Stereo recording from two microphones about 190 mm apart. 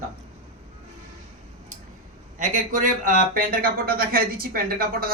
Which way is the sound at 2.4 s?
45° right (ahead or behind).